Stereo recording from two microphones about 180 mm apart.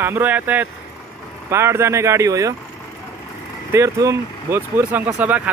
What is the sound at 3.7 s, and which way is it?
Speech, 15° right (ahead or behind).